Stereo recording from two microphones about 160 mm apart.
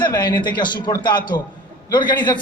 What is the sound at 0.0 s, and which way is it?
A man's voice, 25° left (ahead or behind).